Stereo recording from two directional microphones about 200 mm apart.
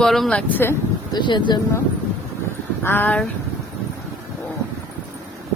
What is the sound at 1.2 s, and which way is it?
Speech, 25° left (ahead or behind).